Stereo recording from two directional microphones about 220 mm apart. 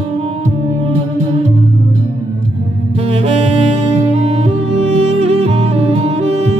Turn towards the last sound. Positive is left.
turn(degrees=-30)  # may be behind; listen again after turning